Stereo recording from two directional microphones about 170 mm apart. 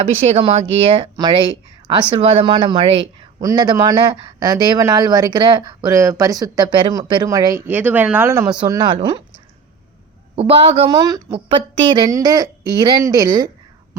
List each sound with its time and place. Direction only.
0.0 s speech: 40° right (ahead or behind); by 8.4 s 15° right (ahead or behind)
8.6 s speech: 25° right (ahead or behind)
10.3 s speech: 35° right (ahead or behind)
10.8 s speech: 20° right (ahead or behind)